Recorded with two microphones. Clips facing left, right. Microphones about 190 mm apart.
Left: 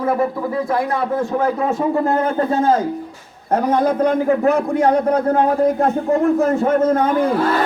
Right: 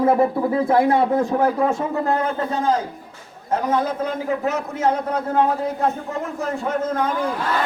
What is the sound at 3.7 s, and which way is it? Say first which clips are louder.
A man's voice: left 8 dB; 60° left (ahead or behind).